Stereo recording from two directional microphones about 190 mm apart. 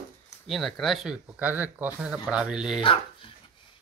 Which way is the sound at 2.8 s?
30° left (ahead or behind).